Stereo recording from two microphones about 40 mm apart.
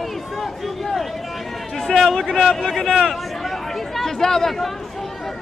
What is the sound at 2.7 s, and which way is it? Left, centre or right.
Speech, centre.